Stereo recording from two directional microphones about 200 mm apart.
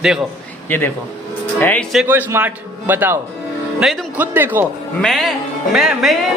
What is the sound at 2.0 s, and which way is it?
A man's voice, 10° right (ahead or behind).